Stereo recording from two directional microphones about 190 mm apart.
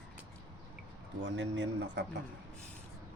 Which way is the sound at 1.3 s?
70° right (ahead or behind).